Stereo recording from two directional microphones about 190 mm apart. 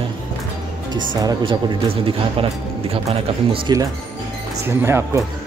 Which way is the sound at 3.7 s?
20° right (ahead or behind).